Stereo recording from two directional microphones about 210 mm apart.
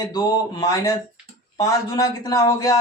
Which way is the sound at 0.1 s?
20° left (ahead or behind).